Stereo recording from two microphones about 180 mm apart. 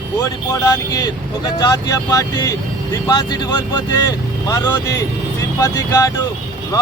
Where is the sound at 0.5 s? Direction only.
20° left (ahead or behind).